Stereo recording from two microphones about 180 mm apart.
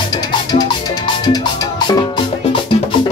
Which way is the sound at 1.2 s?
20° left (ahead or behind).